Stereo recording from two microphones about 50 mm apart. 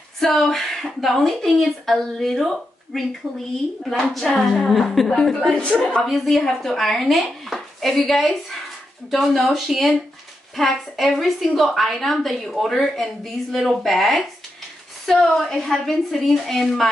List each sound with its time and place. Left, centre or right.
0.2 s a woman's voice: centre
5.5 s a woman's voice: left
6.0 s a woman's voice: centre
7.4 s chopping: centre
9.1 s a woman's voice: centre